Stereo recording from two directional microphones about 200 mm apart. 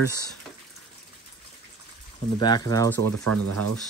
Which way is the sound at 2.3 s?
20° left (ahead or behind).